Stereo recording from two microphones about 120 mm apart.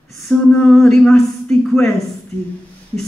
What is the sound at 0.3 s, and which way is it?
A woman's voice, 5° left (ahead or behind).